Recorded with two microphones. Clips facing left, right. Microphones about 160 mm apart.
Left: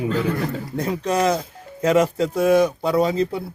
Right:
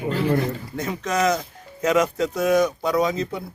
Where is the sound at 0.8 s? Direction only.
30° left (ahead or behind).